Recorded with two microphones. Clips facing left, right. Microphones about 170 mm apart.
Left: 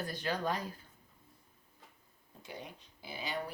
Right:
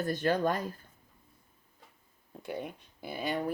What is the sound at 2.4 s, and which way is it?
Speech, 55° right (ahead or behind).